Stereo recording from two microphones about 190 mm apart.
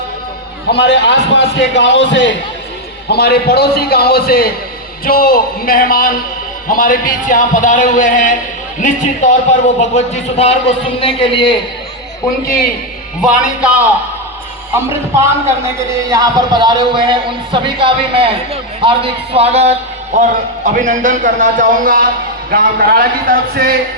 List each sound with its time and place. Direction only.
0.7 s a man's voice: 65° left (ahead or behind)
3.1 s a man's voice: 55° left (ahead or behind); by 11.5 s 25° left (ahead or behind)
15.1 s a man's voice: 15° right (ahead or behind); by 23.7 s 50° right (ahead or behind)